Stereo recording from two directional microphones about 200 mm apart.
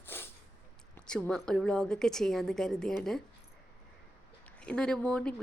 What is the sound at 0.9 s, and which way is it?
A woman's voice, 5° left (ahead or behind).